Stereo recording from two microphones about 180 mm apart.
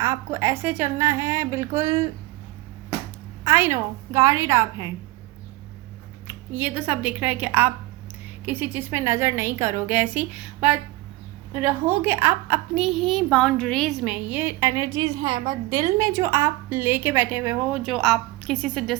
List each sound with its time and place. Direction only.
0.0 s a woman's voice: 15° right (ahead or behind)
3.4 s a woman's voice: 15° right (ahead or behind)
6.2 s a woman's voice: 10° right (ahead or behind)
15.2 s a woman's voice: 35° right (ahead or behind)
15.7 s a woman's voice: 20° right (ahead or behind); by 18.9 s 5° left (ahead or behind)